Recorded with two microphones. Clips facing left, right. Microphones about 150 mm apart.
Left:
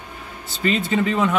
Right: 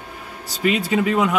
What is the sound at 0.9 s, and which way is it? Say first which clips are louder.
Speech: right 1 dB; 10° right (ahead or behind).